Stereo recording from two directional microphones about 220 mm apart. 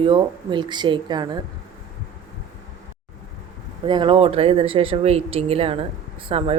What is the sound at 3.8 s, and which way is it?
Speech, 20° right (ahead or behind).